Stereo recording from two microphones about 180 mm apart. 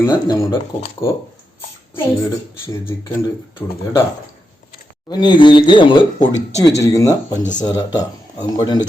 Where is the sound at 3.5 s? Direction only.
15° left (ahead or behind).